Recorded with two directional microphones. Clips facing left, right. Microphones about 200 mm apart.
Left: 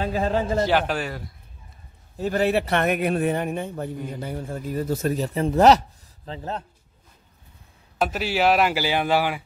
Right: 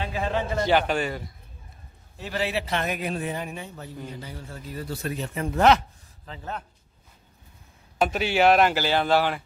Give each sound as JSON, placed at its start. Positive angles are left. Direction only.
{"t": 0.0, "sound": "a man's voice", "side_deg": 40}
{"t": 0.7, "sound": "speech", "side_deg": 0}
{"t": 2.1, "sound": "a man's voice", "side_deg": 45}
{"t": 8.0, "sound": "speech", "side_deg": 0}